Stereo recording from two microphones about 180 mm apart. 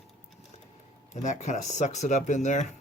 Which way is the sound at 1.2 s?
45° left (ahead or behind).